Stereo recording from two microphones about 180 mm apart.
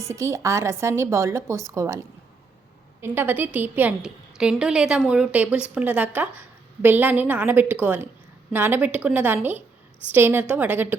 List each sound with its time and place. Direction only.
0.0 s a woman's voice: 15° right (ahead or behind)